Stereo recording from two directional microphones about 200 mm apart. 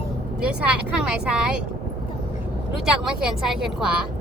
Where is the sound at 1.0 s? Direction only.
5° right (ahead or behind).